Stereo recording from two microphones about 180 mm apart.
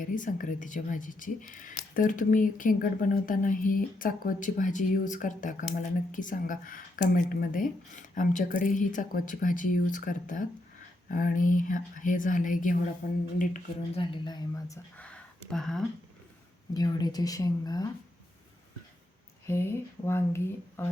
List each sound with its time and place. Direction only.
0.0 s speech: 45° left (ahead or behind)
13.9 s speech: 30° left (ahead or behind); by 15.8 s centre (ahead or behind)
16.7 s speech: 20° left (ahead or behind)
19.5 s speech: 15° left (ahead or behind)